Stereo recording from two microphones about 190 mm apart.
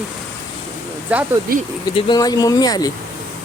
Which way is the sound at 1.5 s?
50° right (ahead or behind).